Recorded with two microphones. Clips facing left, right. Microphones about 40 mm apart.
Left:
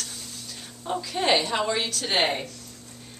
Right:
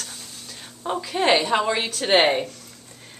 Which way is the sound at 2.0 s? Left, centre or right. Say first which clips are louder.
Right 8 dB; right.